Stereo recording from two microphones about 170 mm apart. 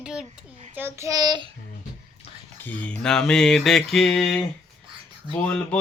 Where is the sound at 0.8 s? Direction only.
15° right (ahead or behind).